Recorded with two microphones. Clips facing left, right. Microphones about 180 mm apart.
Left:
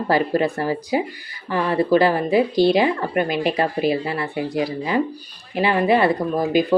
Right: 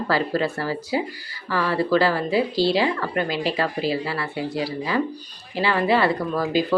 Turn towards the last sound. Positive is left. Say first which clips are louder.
# left 3 dB
turn(degrees=20)  # may be behind; listen again after turning